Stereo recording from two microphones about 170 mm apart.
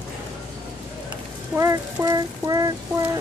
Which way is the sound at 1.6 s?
20° right (ahead or behind).